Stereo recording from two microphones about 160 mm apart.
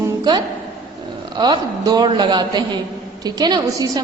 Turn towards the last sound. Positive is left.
turn(degrees=-25)  # may be behind; listen again after turning